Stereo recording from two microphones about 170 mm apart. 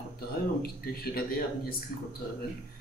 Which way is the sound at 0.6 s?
60° left (ahead or behind).